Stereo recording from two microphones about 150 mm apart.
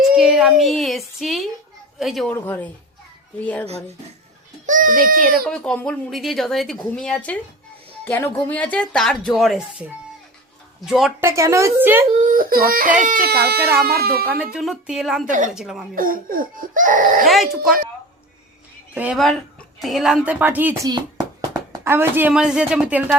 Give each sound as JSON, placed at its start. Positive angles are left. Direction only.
{"t": 0.0, "sound": "a sound", "side_deg": -5}
{"t": 2.0, "sound": "speech", "side_deg": 0}
{"t": 2.3, "sound": "speech", "side_deg": 15}
{"t": 4.6, "sound": "a child's voice", "side_deg": -60}
{"t": 5.5, "sound": "speech", "side_deg": 5}
{"t": 11.2, "sound": "speech", "side_deg": -20}
{"t": 12.4, "sound": "speech", "side_deg": -80}
{"t": 14.3, "sound": "speech", "side_deg": -10}
{"t": 16.0, "sound": "speech", "side_deg": -70}
{"t": 17.2, "sound": "speech", "side_deg": 0}
{"t": 19.1, "sound": "speech", "side_deg": 5}